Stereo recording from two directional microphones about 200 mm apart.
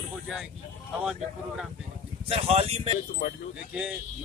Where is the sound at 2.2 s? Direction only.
30° right (ahead or behind).